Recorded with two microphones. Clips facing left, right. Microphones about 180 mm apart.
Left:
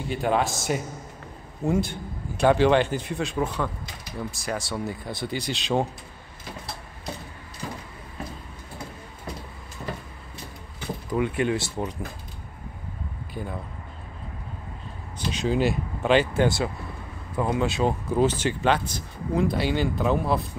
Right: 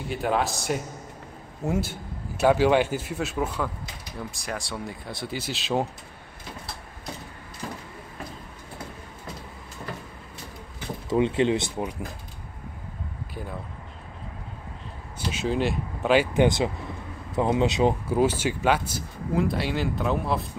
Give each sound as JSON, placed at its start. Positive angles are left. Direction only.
{"t": 0.1, "sound": "speech", "side_deg": 0}
{"t": 11.1, "sound": "speech", "side_deg": -25}
{"t": 13.3, "sound": "speech", "side_deg": 0}
{"t": 15.1, "sound": "speech", "side_deg": -5}
{"t": 18.0, "sound": "speech", "side_deg": -10}